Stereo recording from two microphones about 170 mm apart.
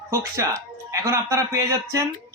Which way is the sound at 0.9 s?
20° right (ahead or behind).